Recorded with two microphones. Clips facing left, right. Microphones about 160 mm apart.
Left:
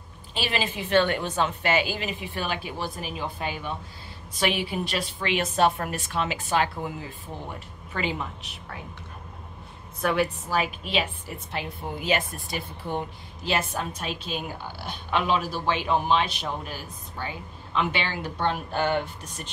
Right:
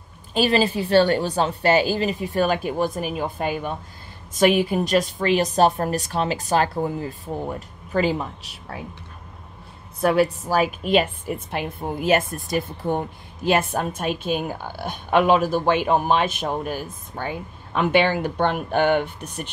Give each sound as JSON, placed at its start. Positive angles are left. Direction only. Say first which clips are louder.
{"t": 0.3, "sound": "a woman's voice", "louder": "right 10 dB", "side_deg": -40}
{"t": 10.0, "sound": "a woman's voice", "louder": "right 6 dB", "side_deg": -40}